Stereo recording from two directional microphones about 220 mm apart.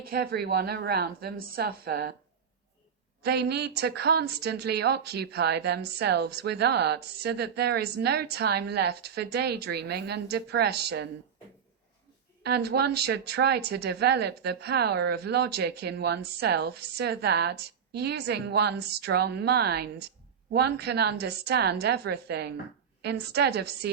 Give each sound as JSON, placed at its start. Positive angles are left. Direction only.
{"t": 0.0, "sound": "a woman's voice", "side_deg": -45}
{"t": 3.2, "sound": "a woman's voice", "side_deg": -50}
{"t": 12.4, "sound": "a woman's voice", "side_deg": -50}